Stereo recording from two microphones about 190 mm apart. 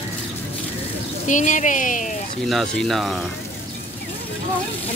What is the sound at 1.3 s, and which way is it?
Speech, 40° left (ahead or behind).